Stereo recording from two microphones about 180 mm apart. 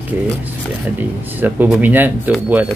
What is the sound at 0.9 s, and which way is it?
Speech, 10° right (ahead or behind).